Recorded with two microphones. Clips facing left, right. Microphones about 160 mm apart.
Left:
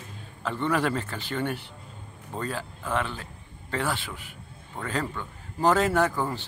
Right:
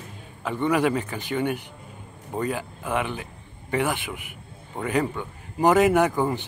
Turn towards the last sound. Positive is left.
turn(degrees=-15)  # may be behind; listen again after turning